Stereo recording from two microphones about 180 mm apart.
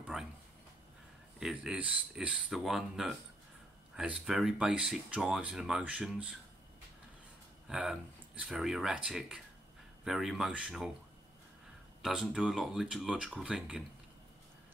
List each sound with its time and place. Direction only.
0.1 s a sound: centre (ahead or behind)
1.4 s speech: 5° right (ahead or behind)
7.7 s speech: 5° right (ahead or behind)
12.0 s speech: 5° right (ahead or behind)